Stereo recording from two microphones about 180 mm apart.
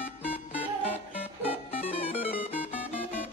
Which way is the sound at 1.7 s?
35° left (ahead or behind).